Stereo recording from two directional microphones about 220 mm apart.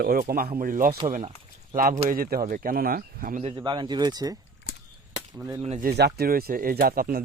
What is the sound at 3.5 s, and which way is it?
Speech, 20° right (ahead or behind).